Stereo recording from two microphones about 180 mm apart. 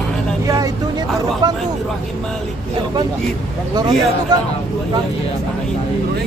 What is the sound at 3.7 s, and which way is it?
Speech, 20° right (ahead or behind).